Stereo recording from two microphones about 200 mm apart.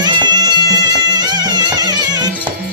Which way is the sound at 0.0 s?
20° right (ahead or behind).